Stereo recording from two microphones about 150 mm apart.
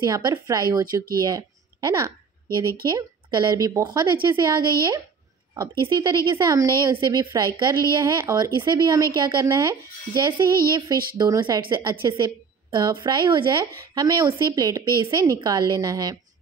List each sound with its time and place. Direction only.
0.0 s a woman's voice: 25° right (ahead or behind)